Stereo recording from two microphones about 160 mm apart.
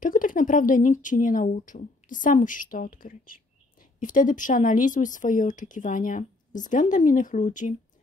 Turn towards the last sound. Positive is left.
turn(degrees=50)  # may be behind; listen again after turning